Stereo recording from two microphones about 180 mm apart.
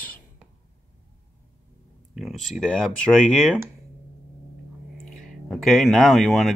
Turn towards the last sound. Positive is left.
turn(degrees=0)  # may be behind; listen again after turning